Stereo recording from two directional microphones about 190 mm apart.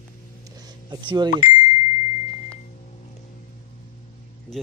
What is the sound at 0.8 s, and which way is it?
Speech, 25° right (ahead or behind).